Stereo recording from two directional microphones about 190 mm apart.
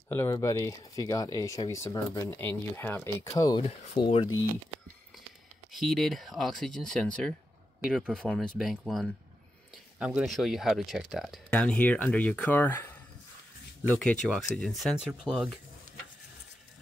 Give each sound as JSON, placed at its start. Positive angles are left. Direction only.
{"t": 0.1, "sound": "speech", "side_deg": 15}
{"t": 5.7, "sound": "speech", "side_deg": 0}
{"t": 14.2, "sound": "speech", "side_deg": 5}